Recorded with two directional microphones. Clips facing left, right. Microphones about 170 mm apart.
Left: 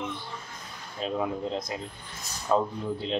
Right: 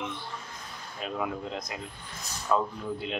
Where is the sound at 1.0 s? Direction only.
30° left (ahead or behind).